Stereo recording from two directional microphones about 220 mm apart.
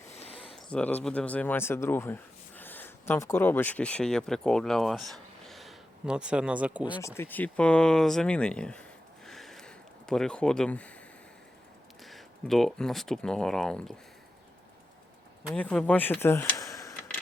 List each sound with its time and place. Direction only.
0.0 s a sound: 30° left (ahead or behind)
0.5 s speech: 5° left (ahead or behind)
6.9 s speech: 10° left (ahead or behind)
12.0 s speech: centre (ahead or behind)
15.4 s speech: 5° left (ahead or behind)